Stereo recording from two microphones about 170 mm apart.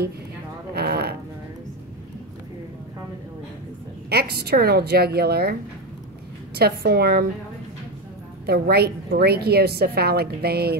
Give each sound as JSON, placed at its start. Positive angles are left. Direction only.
{"t": 0.7, "sound": "music", "side_deg": -65}
{"t": 4.1, "sound": "a woman's voice", "side_deg": -70}
{"t": 8.5, "sound": "a woman's voice", "side_deg": -65}